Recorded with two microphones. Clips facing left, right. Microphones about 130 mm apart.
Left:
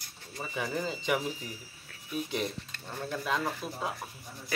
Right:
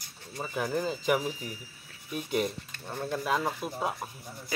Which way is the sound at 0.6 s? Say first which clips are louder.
Right 3 dB; centre (ahead or behind).